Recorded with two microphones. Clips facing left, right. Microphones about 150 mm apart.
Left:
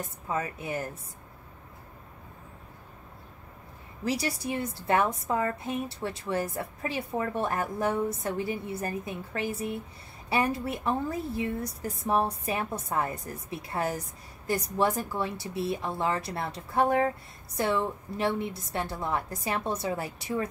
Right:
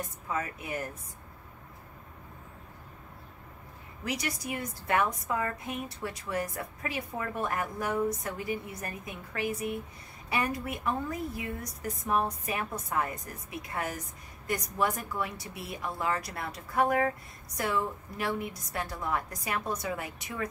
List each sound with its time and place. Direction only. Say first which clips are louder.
0.3 s a woman's voice: left 3 dB; 30° left (ahead or behind)
4.0 s a woman's voice: left 5 dB; 30° left (ahead or behind)